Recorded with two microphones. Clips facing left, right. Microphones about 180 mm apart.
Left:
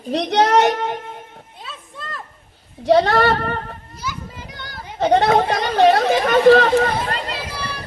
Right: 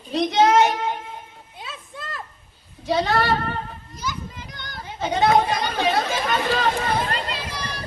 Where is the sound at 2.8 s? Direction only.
70° left (ahead or behind).